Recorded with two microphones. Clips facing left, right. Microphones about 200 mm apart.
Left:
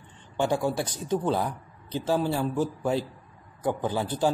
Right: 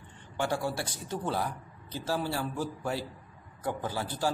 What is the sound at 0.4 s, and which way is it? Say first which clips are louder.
Speech: left 5 dB; 20° left (ahead or behind).